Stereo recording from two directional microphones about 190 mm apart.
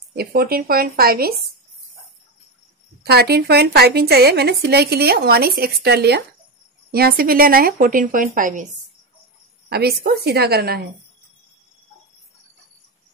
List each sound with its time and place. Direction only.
0.1 s speech: 55° right (ahead or behind)
3.0 s a woman's voice: 55° right (ahead or behind)
9.7 s a woman's voice: 55° right (ahead or behind)